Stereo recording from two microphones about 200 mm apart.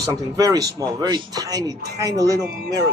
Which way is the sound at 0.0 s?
20° right (ahead or behind).